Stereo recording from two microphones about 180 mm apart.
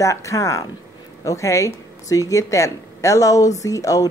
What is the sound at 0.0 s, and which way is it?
A woman's voice, 15° left (ahead or behind).